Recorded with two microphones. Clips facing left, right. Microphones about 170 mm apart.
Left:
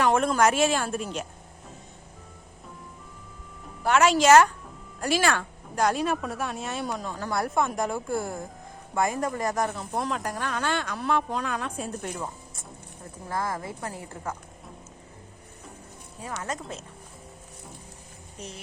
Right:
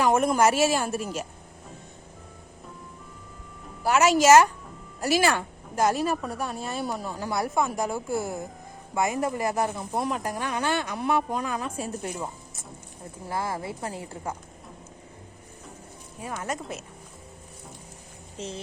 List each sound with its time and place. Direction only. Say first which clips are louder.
0.0 s speech: right 1 dB; 10° right (ahead or behind)
3.8 s speech: right 1 dB; 10° right (ahead or behind)
9.0 s speech: right 1 dB; 15° right (ahead or behind)
13.2 s a woman's voice: even; 30° right (ahead or behind)
16.2 s speech: right 1 dB; 15° right (ahead or behind)
18.3 s a woman's voice: right 6 dB; 25° right (ahead or behind)